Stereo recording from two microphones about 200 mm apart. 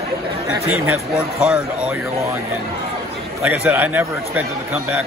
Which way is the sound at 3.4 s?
10° right (ahead or behind).